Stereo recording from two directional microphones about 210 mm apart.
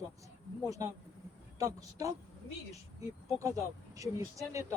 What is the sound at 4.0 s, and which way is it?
Speech, 15° right (ahead or behind).